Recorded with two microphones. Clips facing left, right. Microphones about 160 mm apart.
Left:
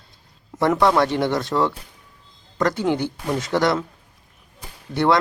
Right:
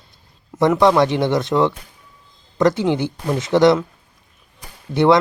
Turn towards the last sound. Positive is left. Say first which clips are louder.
# right 5 dB
turn(degrees=-20)  # may be behind; listen again after turning